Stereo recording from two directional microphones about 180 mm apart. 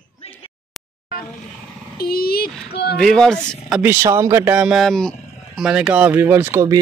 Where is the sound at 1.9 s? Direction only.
60° left (ahead or behind).